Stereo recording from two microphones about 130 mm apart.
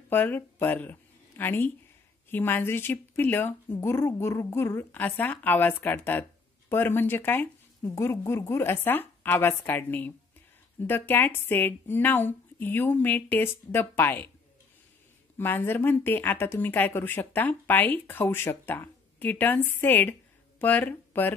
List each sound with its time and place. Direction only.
0.1 s speech: 15° left (ahead or behind)
15.3 s speech: 15° left (ahead or behind)